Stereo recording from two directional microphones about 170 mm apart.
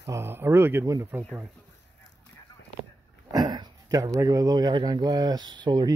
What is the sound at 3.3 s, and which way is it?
Speech, 25° right (ahead or behind).